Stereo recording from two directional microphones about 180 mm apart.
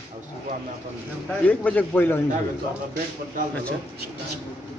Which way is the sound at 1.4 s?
10° left (ahead or behind).